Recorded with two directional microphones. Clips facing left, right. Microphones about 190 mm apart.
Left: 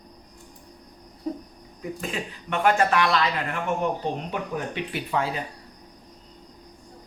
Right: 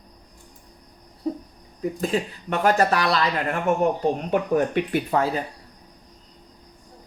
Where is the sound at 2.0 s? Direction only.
40° right (ahead or behind).